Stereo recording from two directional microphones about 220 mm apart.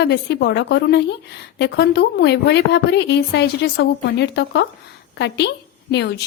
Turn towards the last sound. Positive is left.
turn(degrees=50)  # may be behind; listen again after turning